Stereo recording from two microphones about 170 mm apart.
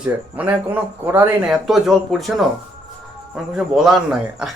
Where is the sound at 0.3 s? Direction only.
10° right (ahead or behind).